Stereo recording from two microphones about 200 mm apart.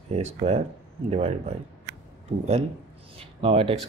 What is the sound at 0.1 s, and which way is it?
Speech, 35° right (ahead or behind).